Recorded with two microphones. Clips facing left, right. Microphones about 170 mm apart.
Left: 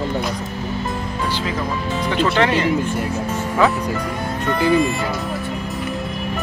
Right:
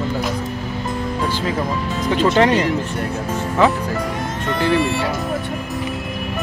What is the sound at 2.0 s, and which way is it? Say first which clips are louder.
Speech: right 3 dB; 40° right (ahead or behind).